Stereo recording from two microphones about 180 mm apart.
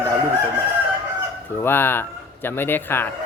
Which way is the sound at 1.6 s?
10° left (ahead or behind).